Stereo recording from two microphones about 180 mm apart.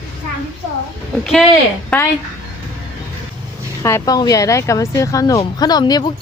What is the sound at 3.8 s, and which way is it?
Speech, 20° left (ahead or behind).